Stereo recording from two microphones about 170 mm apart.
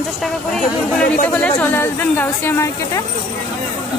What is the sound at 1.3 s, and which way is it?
Speech, 10° left (ahead or behind).